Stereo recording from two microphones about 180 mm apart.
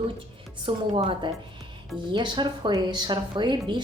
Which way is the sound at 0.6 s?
30° right (ahead or behind).